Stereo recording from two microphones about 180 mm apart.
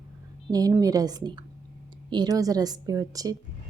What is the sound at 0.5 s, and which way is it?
A woman's voice, 20° right (ahead or behind).